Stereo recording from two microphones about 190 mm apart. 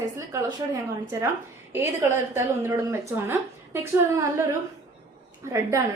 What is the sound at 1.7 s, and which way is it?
A woman's voice, 15° right (ahead or behind).